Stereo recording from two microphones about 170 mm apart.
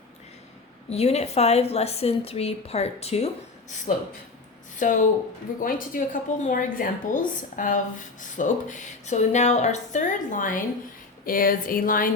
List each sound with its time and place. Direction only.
0.9 s a woman's voice: 40° left (ahead or behind); by 12.1 s 55° left (ahead or behind)